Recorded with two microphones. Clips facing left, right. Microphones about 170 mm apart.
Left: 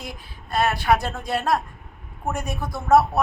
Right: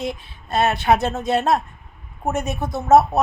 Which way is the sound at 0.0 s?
25° right (ahead or behind).